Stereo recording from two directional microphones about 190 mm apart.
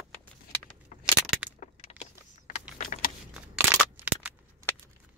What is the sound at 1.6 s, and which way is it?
Keys jangling, 35° left (ahead or behind).